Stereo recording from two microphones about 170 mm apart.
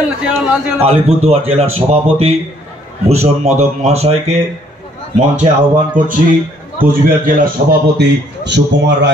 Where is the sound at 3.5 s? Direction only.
40° right (ahead or behind).